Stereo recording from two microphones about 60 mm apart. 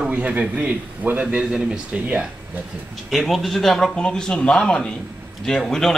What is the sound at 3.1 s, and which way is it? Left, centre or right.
Speech, centre.